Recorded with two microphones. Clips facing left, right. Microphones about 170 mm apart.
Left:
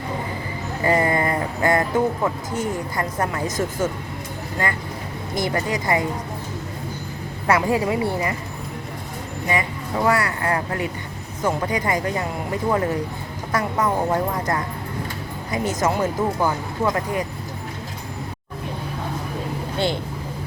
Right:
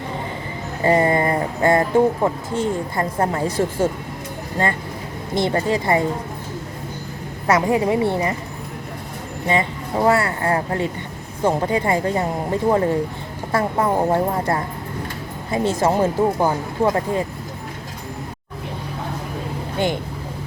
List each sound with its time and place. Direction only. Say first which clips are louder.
0.9 s speech: right 3 dB; 25° right (ahead or behind)
5.3 s speech: right 4 dB; 25° right (ahead or behind)
7.4 s speech: right 2 dB; 20° right (ahead or behind)
9.5 s speech: right 4 dB; 25° right (ahead or behind)
19.8 s speech: right 2 dB; 15° right (ahead or behind)